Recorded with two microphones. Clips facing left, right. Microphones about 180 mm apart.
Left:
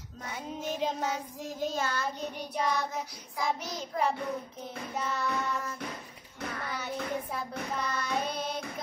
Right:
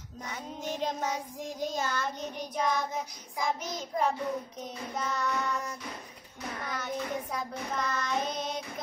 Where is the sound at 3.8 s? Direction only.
10° left (ahead or behind).